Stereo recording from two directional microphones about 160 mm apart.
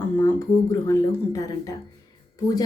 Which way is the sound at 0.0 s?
10° left (ahead or behind).